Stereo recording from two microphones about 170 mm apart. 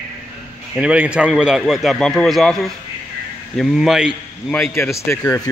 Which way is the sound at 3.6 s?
Centre (ahead or behind).